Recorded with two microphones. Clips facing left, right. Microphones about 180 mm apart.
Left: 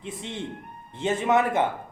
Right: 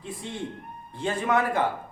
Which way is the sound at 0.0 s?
20° left (ahead or behind).